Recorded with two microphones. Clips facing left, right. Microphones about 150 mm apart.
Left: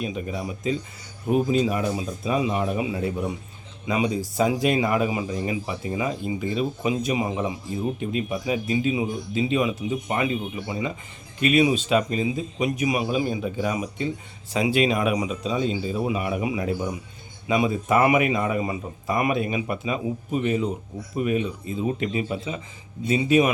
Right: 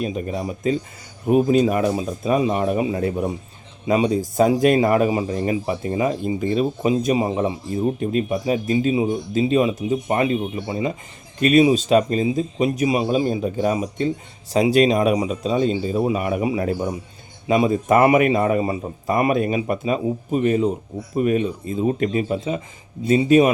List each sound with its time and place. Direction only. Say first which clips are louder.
0.0 s speech: right 4 dB; 40° right (ahead or behind)
1.5 s a man's voice: right 5 dB; 55° right (ahead or behind)